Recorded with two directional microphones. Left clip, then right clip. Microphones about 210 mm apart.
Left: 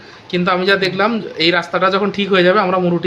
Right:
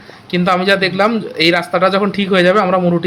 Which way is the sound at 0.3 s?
Centre (ahead or behind).